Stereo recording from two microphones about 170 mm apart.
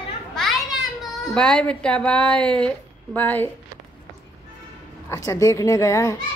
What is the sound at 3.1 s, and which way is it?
Speech, 10° left (ahead or behind).